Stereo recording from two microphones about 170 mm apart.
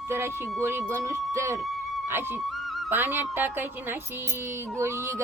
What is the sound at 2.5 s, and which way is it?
Music, centre (ahead or behind).